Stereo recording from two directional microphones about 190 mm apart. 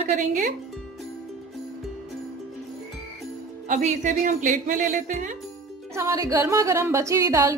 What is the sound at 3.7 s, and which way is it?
A woman's voice, 40° right (ahead or behind).